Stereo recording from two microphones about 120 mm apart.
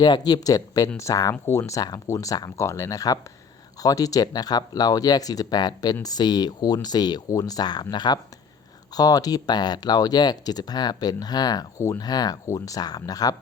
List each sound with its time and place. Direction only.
0.0 s speech: 35° left (ahead or behind)